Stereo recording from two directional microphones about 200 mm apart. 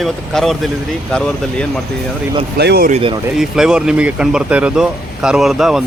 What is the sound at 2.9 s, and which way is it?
Speech, 30° right (ahead or behind).